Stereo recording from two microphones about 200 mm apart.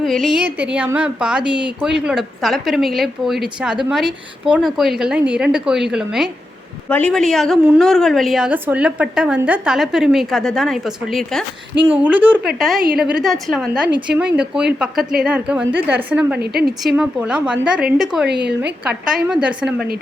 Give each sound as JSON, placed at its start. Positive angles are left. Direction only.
{"t": 0.0, "sound": "a woman's voice", "side_deg": 0}
{"t": 16.4, "sound": "speech", "side_deg": -50}
{"t": 16.8, "sound": "a woman's voice", "side_deg": 0}
{"t": 18.3, "sound": "a woman's voice", "side_deg": -55}
{"t": 19.0, "sound": "a woman's voice", "side_deg": -5}